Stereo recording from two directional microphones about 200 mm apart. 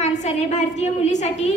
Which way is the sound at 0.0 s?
35° left (ahead or behind).